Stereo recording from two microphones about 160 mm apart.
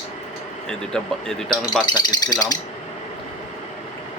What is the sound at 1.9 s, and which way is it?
Speech, 25° left (ahead or behind).